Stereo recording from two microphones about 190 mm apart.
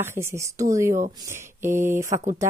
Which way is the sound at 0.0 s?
15° right (ahead or behind).